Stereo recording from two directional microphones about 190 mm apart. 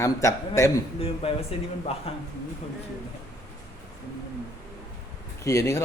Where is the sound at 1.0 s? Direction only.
30° left (ahead or behind).